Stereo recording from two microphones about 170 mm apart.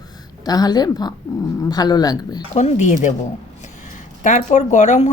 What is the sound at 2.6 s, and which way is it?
A woman's voice, 45° left (ahead or behind).